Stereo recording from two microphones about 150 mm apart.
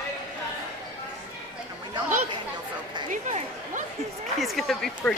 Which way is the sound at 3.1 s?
55° right (ahead or behind).